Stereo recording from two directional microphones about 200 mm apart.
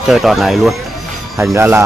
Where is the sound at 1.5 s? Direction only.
10° right (ahead or behind).